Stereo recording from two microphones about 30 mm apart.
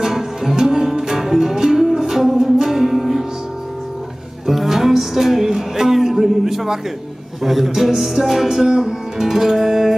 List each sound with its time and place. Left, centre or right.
0.0 s music: centre
4.5 s music: centre